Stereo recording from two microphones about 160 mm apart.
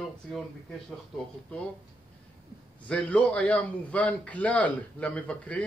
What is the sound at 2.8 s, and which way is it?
A man's voice, 10° left (ahead or behind).